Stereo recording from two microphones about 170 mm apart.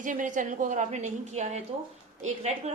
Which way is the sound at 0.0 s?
50° right (ahead or behind).